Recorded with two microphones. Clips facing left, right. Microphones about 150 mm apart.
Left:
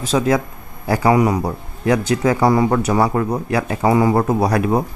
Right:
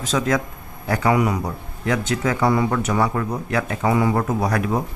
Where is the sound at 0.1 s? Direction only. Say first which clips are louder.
Left 4 dB; 25° left (ahead or behind).